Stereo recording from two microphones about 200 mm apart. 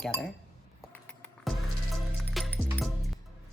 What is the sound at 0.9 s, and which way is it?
Music, 5° left (ahead or behind).